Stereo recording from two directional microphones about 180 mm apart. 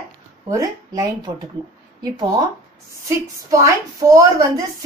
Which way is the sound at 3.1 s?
15° right (ahead or behind).